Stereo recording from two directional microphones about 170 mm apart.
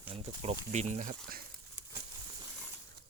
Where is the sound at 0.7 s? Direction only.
40° right (ahead or behind).